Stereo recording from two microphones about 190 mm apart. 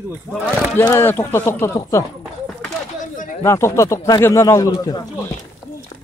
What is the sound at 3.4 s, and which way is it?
Speech, 15° left (ahead or behind).